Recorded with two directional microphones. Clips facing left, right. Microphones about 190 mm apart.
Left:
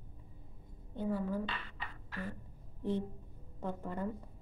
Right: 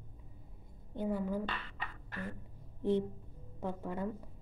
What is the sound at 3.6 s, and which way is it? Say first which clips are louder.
Speech: right 1 dB; 10° right (ahead or behind).